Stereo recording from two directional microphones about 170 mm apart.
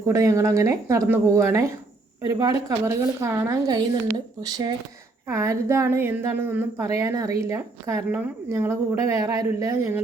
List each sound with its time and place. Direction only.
0.0 s a woman's voice: 20° right (ahead or behind)